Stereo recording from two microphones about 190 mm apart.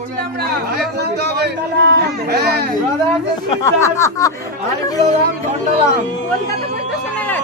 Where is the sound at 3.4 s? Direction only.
15° left (ahead or behind).